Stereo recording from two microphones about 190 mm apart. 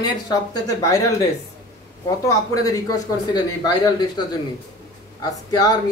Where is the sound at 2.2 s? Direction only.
20° left (ahead or behind).